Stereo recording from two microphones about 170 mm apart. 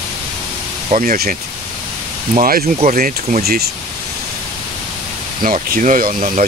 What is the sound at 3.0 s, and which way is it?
Speech, 55° right (ahead or behind).